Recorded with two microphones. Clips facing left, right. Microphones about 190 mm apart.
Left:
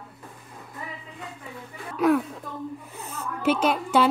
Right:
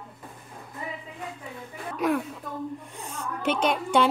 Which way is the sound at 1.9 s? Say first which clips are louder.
Left 5 dB; centre (ahead or behind).